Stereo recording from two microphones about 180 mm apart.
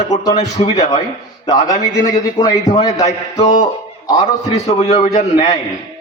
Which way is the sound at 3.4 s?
40° left (ahead or behind).